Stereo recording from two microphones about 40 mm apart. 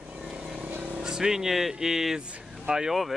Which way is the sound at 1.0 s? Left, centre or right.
Centre.